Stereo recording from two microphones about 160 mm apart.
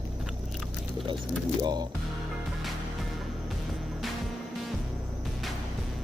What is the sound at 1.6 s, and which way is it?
Speech, 25° right (ahead or behind).